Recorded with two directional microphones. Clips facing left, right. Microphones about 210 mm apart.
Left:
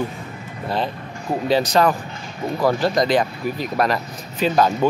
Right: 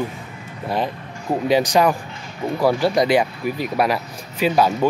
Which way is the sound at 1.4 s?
15° right (ahead or behind).